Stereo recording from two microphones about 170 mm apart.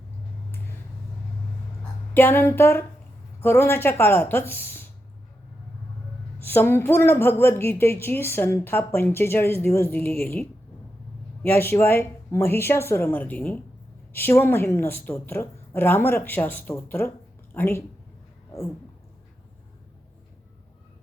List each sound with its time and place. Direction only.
1.8 s a woman's voice: 10° left (ahead or behind)
6.4 s a woman's voice: 10° left (ahead or behind)
11.4 s a woman's voice: 15° left (ahead or behind)